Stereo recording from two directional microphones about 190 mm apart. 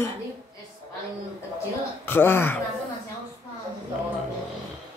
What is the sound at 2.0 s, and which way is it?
Speech, 10° left (ahead or behind).